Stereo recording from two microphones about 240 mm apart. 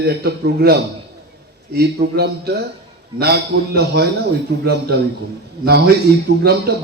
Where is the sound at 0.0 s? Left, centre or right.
Right.